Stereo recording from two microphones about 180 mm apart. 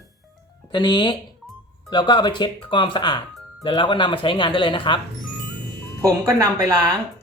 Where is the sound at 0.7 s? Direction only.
25° left (ahead or behind).